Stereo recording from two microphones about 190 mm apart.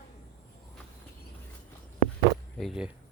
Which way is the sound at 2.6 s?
5° right (ahead or behind).